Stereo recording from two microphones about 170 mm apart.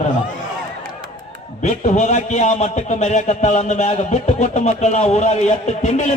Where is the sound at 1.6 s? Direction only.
45° left (ahead or behind).